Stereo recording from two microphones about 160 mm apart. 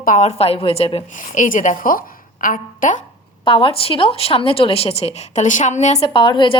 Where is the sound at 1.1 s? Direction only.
55° left (ahead or behind).